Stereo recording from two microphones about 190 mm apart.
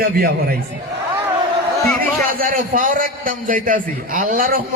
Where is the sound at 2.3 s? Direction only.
45° right (ahead or behind).